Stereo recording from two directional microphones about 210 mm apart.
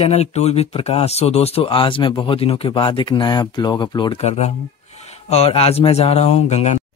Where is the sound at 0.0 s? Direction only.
30° left (ahead or behind).